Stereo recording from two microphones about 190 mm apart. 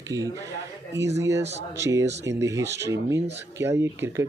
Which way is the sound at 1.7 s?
15° right (ahead or behind).